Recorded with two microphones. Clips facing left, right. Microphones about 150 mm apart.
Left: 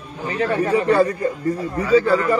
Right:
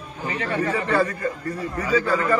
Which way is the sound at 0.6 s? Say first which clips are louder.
Left 6 dB; 20° left (ahead or behind).